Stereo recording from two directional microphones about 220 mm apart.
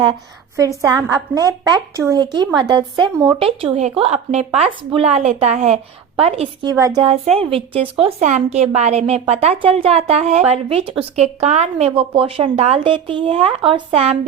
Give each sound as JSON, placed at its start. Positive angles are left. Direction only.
{"t": 0.0, "sound": "a woman's voice", "side_deg": -20}